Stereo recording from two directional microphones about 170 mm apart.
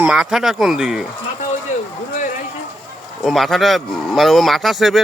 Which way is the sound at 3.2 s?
Centre (ahead or behind).